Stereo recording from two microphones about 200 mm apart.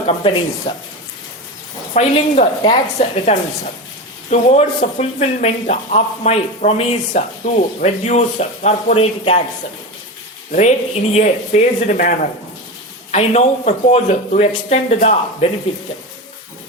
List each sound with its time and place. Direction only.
0.7 s speech: 25° left (ahead or behind)
1.9 s speech: 35° left (ahead or behind)
10.5 s speech: 35° left (ahead or behind)